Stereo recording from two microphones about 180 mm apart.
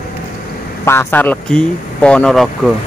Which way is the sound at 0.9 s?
10° left (ahead or behind).